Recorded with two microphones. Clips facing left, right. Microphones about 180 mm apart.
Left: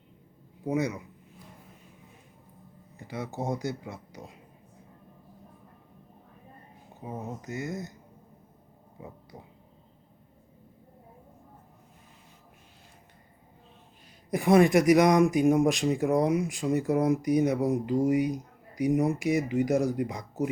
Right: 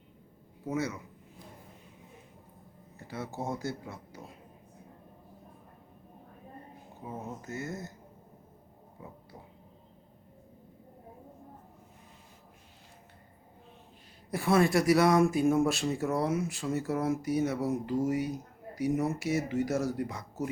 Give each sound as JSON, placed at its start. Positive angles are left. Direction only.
{"t": 0.6, "sound": "speech", "side_deg": 15}
{"t": 3.0, "sound": "speech", "side_deg": 15}
{"t": 7.0, "sound": "speech", "side_deg": 15}
{"t": 14.3, "sound": "speech", "side_deg": 15}